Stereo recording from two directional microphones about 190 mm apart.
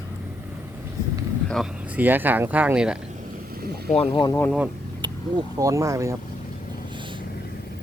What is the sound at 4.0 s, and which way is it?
Speech, 25° left (ahead or behind).